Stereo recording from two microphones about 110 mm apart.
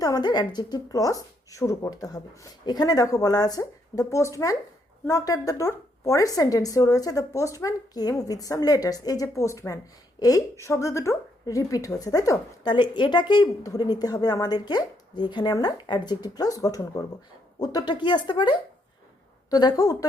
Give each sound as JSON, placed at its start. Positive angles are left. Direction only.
{"t": 0.0, "sound": "a woman's voice", "side_deg": 40}
{"t": 12.7, "sound": "a woman's voice", "side_deg": 45}